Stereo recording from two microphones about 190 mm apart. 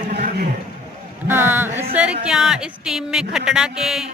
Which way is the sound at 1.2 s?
10° right (ahead or behind).